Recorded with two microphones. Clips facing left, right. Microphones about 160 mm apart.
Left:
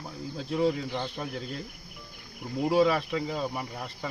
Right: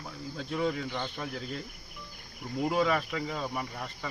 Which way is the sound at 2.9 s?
30° left (ahead or behind).